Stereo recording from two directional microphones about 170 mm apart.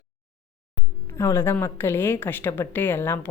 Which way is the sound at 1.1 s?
15° left (ahead or behind).